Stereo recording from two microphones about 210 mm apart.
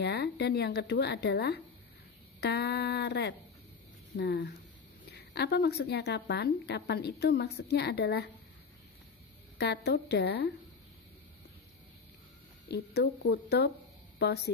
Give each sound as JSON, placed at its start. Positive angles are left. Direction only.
{"t": 0.0, "sound": "a woman's voice", "side_deg": 50}
{"t": 9.6, "sound": "a woman's voice", "side_deg": 50}
{"t": 12.6, "sound": "a woman's voice", "side_deg": 50}